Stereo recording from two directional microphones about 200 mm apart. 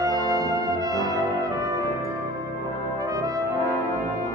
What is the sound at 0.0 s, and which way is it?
Brass instrument, 15° right (ahead or behind).